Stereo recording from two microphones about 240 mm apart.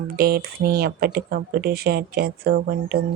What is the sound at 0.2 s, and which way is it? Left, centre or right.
Speech, right.